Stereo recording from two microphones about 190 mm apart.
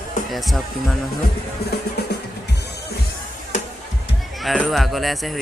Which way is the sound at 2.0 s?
60° left (ahead or behind).